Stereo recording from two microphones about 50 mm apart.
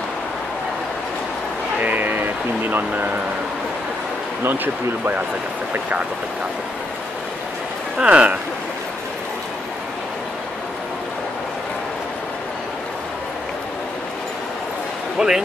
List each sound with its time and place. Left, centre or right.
1.8 s a sound: right
5.7 s speech: right
8.0 s speech: right
15.1 s speech: centre